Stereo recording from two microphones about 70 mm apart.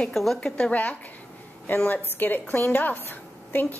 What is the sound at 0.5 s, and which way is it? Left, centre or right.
A woman's voice, centre.